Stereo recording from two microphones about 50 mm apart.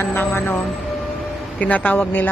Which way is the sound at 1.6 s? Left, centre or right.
Left.